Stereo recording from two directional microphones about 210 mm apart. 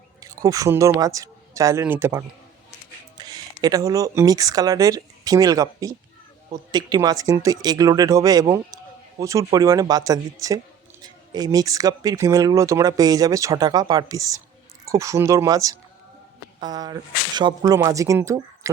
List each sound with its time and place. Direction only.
0.2 s speech: 15° right (ahead or behind)